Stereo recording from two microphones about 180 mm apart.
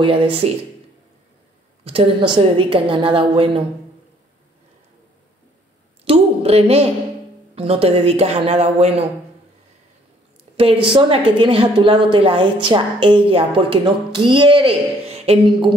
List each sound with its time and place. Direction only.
0.0 s a woman's voice: 30° right (ahead or behind)
1.9 s a woman's voice: 30° right (ahead or behind)
6.0 s speech: 35° right (ahead or behind)
10.6 s a woman's voice: 30° right (ahead or behind)